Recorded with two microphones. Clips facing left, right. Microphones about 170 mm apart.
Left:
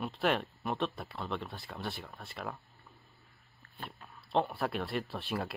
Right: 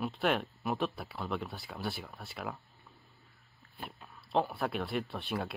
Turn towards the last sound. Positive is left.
turn(degrees=0)  # may be behind; listen again after turning